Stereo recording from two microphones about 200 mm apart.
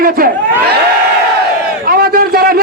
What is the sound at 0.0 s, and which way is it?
Speech, 45° right (ahead or behind).